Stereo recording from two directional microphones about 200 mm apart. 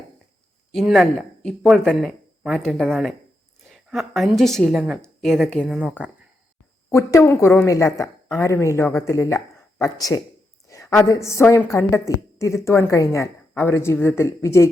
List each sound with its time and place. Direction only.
0.7 s speech: centre (ahead or behind)
6.9 s a woman's voice: 15° left (ahead or behind)